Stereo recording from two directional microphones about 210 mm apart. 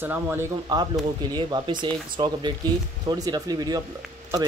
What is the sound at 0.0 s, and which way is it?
Speech, 10° right (ahead or behind).